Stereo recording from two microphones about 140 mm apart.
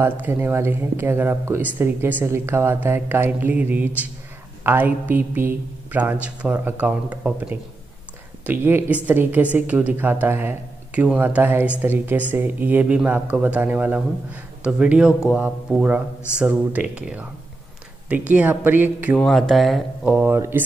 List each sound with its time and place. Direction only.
0.0 s speech: 15° right (ahead or behind)
19.1 s speech: 5° left (ahead or behind); by 20.6 s 15° right (ahead or behind)